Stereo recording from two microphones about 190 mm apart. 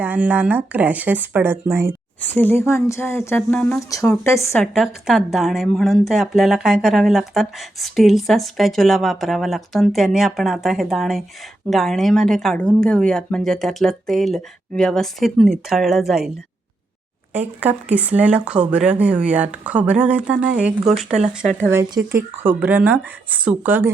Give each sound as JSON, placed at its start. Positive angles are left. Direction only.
{"t": 0.0, "sound": "speech", "side_deg": -5}
{"t": 2.2, "sound": "speech", "side_deg": 10}
{"t": 4.6, "sound": "a woman's voice", "side_deg": 0}
{"t": 17.3, "sound": "speech", "side_deg": -10}
{"t": 21.1, "sound": "speech", "side_deg": -35}
{"t": 22.1, "sound": "speech", "side_deg": -10}